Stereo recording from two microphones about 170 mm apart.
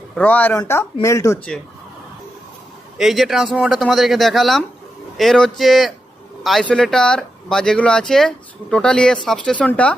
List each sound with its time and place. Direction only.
0.2 s speech: 10° left (ahead or behind)
3.0 s speech: centre (ahead or behind)